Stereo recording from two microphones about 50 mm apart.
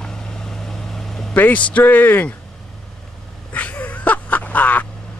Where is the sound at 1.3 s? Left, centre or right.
Left.